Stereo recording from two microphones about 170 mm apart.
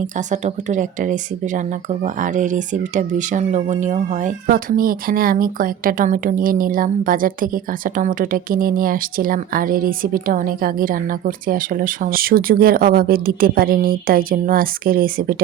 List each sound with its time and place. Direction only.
0.3 s speech: 45° right (ahead or behind)